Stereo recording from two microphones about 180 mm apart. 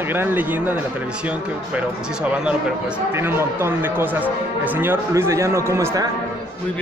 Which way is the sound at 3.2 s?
15° right (ahead or behind).